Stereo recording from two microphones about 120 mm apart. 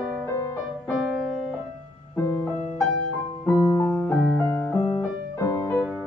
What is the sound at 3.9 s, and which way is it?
Piano, 10° left (ahead or behind).